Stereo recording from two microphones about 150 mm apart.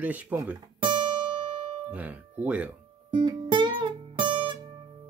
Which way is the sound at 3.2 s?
30° right (ahead or behind).